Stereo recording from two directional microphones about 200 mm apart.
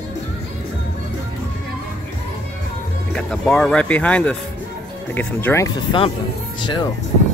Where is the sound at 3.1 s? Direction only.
5° left (ahead or behind).